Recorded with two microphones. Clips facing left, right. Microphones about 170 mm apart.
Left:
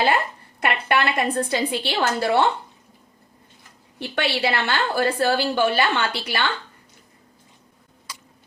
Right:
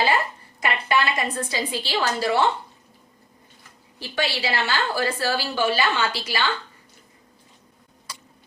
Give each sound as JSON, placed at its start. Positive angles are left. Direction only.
{"t": 0.6, "sound": "a woman's voice", "side_deg": 60}
{"t": 4.0, "sound": "a woman's voice", "side_deg": 60}